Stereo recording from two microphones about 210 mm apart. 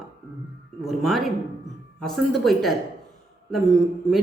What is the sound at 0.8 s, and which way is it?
A woman's voice, centre (ahead or behind).